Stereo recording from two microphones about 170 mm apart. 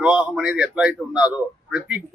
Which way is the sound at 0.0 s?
5° right (ahead or behind).